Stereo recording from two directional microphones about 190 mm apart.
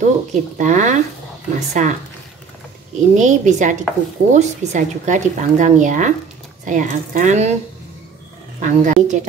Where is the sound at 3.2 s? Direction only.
40° right (ahead or behind).